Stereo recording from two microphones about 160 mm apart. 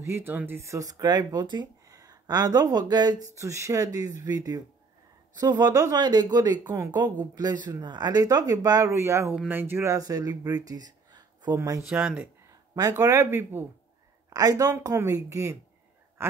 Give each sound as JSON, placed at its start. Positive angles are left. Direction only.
{"t": 0.0, "sound": "speech", "side_deg": -15}
{"t": 11.9, "sound": "speech", "side_deg": -5}
{"t": 12.4, "sound": "speech", "side_deg": -20}
{"t": 16.2, "sound": "a sound", "side_deg": -15}